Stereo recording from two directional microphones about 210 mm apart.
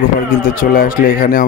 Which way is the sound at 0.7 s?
45° left (ahead or behind).